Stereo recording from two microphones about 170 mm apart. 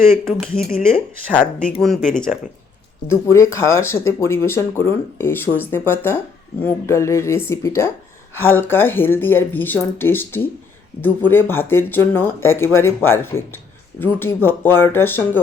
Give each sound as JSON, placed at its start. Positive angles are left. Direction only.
{"t": 0.1, "sound": "speech", "side_deg": 5}
{"t": 3.1, "sound": "speech", "side_deg": 15}